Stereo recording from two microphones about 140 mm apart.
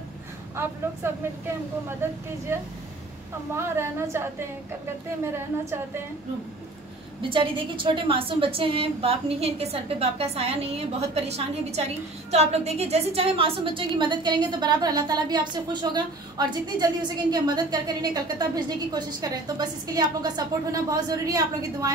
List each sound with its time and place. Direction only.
1.0 s a woman's voice: 15° right (ahead or behind)
2.5 s a woman's voice: 15° right (ahead or behind)
7.2 s a woman's voice: 40° right (ahead or behind)